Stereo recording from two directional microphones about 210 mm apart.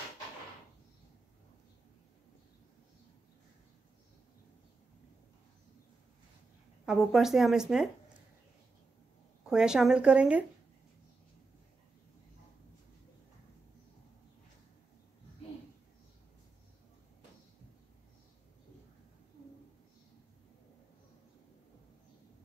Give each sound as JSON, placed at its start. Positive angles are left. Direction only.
{"t": 6.9, "sound": "speech", "side_deg": 0}
{"t": 9.5, "sound": "speech", "side_deg": -5}